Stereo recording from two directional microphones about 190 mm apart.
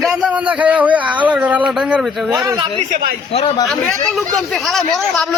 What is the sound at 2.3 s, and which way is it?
Speech, 20° right (ahead or behind).